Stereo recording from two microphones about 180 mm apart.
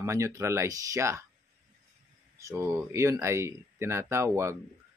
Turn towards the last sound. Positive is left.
turn(degrees=-15)  # may be behind; listen again after turning